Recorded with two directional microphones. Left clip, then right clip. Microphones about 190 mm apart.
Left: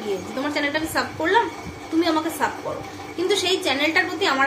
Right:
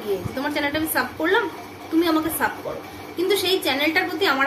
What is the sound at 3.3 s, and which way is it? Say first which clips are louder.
A woman's voice: even; 5° right (ahead or behind).